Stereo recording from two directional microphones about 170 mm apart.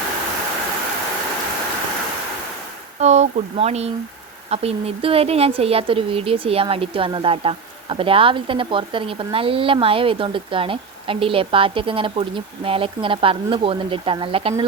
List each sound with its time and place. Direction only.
3.0 s speech: 40° right (ahead or behind)